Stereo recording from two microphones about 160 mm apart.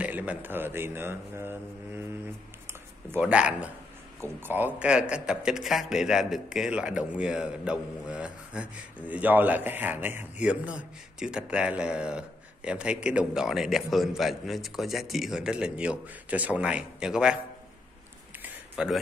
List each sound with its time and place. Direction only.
0.0 s a man's voice: 10° right (ahead or behind)
3.1 s a man's voice: 10° right (ahead or behind)
18.4 s a sound: 5° right (ahead or behind)